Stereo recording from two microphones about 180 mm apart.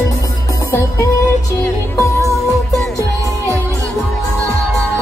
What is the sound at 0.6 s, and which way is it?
Music, 15° left (ahead or behind).